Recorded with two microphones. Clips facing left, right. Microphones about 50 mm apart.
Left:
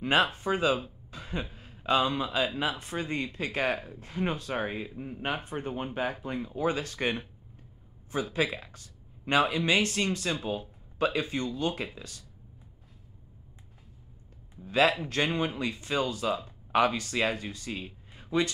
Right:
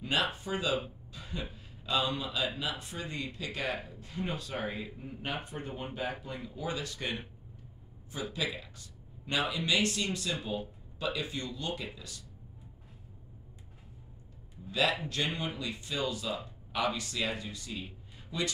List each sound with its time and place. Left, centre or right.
0.0 s speech: left
14.7 s speech: left